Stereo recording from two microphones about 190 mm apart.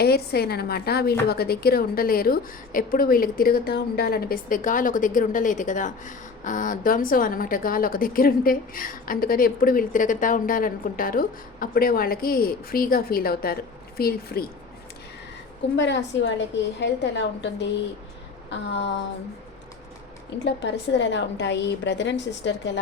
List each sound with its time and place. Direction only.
0.0 s a woman's voice: 55° left (ahead or behind)
15.7 s a woman's voice: 70° left (ahead or behind)
20.4 s a woman's voice: 65° left (ahead or behind)